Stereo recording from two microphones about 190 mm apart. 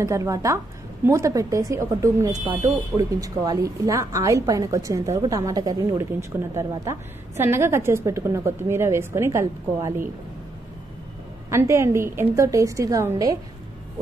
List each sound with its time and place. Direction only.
0.0 s a woman's voice: 15° right (ahead or behind)
11.5 s a woman's voice: 15° right (ahead or behind)